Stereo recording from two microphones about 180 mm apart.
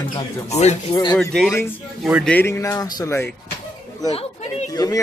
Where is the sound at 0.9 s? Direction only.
20° left (ahead or behind).